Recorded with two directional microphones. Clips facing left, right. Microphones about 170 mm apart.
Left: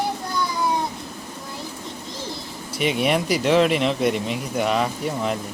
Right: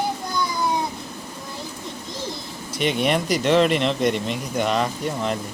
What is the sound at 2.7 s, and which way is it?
Speech, 5° left (ahead or behind).